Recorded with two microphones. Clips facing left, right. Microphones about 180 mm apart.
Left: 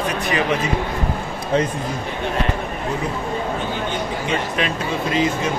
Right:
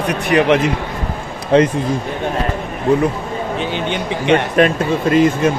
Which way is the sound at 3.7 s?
75° right (ahead or behind).